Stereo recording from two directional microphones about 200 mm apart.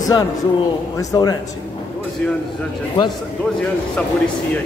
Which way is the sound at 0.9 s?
20° left (ahead or behind).